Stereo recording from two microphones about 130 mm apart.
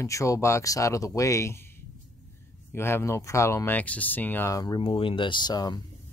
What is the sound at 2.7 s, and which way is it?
Speech, 20° left (ahead or behind).